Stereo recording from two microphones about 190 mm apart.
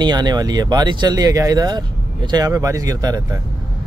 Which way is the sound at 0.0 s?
20° right (ahead or behind).